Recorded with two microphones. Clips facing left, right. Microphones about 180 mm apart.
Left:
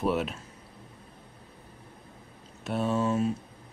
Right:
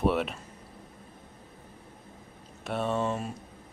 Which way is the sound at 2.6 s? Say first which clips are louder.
Left 2 dB; centre (ahead or behind).